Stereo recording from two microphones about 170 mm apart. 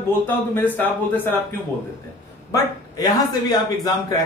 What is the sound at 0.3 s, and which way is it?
Speech, 10° left (ahead or behind).